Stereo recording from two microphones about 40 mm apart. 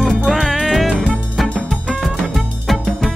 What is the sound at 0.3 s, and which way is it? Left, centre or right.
Music, centre.